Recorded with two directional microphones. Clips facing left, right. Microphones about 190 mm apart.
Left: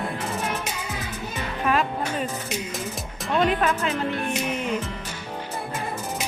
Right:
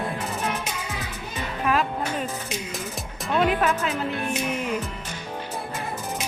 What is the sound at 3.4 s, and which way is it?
Speech, 5° right (ahead or behind).